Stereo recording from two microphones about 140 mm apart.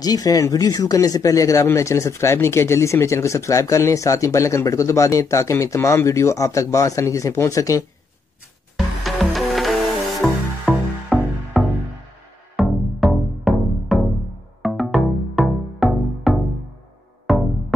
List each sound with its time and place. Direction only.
0.0 s speech: 25° left (ahead or behind)
8.7 s music: centre (ahead or behind)